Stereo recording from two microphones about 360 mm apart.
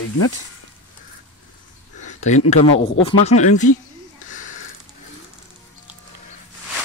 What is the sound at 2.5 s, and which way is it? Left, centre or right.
Speech, centre.